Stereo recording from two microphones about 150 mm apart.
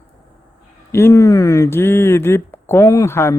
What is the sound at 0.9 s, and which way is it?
Speech, 15° left (ahead or behind).